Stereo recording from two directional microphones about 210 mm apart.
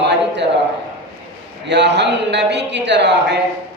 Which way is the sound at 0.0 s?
55° right (ahead or behind).